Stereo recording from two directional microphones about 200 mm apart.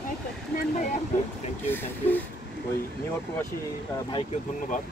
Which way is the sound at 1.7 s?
10° left (ahead or behind).